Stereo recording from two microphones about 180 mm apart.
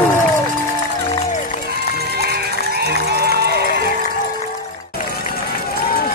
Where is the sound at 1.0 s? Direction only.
35° left (ahead or behind); by 2.1 s 60° left (ahead or behind).